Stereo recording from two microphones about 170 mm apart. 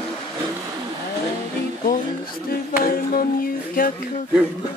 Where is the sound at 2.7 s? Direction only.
60° left (ahead or behind).